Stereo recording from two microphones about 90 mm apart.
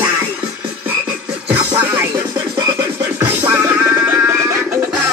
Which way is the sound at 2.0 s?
25° right (ahead or behind).